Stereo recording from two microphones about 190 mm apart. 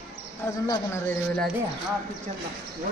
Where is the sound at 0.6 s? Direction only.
15° left (ahead or behind).